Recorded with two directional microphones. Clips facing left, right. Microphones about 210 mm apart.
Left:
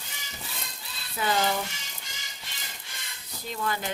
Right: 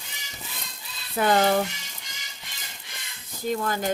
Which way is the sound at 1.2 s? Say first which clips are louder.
Right 6 dB; 55° right (ahead or behind).